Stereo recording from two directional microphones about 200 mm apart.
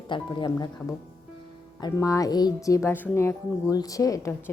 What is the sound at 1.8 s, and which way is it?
A woman's voice, 15° left (ahead or behind).